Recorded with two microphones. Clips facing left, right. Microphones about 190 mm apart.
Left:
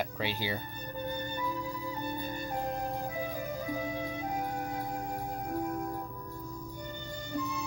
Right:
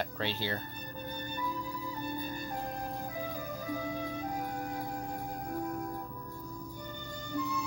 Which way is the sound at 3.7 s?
20° left (ahead or behind).